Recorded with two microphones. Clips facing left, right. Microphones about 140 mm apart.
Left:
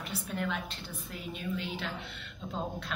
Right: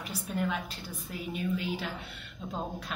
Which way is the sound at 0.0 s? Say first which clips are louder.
Right 2 dB; 5° right (ahead or behind).